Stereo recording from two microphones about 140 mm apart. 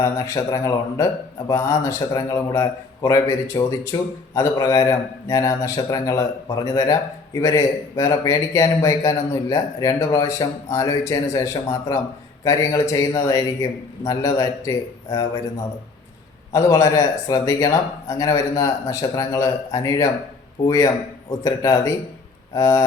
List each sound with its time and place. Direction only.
0.0 s a man's voice: 20° left (ahead or behind)
16.5 s a man's voice: 25° left (ahead or behind)